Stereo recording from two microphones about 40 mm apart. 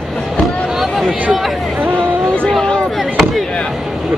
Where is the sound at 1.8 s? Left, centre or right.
Right.